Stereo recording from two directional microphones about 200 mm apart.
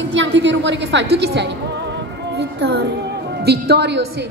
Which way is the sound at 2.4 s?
55° right (ahead or behind).